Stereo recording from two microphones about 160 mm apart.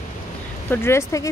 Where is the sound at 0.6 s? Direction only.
15° left (ahead or behind).